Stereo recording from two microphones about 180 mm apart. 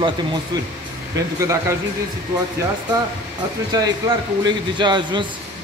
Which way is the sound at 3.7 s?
25° right (ahead or behind).